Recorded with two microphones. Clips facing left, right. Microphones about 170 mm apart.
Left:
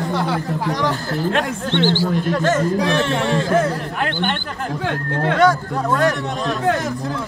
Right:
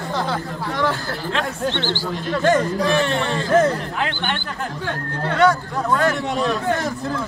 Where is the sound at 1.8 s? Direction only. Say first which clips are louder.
Left 7 dB; 15° left (ahead or behind).